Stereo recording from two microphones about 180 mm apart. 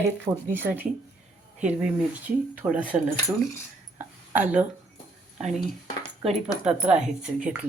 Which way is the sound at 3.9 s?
10° right (ahead or behind).